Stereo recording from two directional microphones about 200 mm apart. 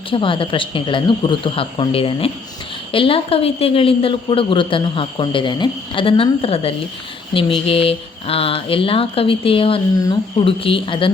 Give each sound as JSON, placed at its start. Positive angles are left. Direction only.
{"t": 0.1, "sound": "a woman's voice", "side_deg": 25}